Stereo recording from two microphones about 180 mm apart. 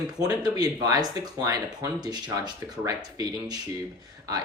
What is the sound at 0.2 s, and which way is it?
Speech, 20° right (ahead or behind).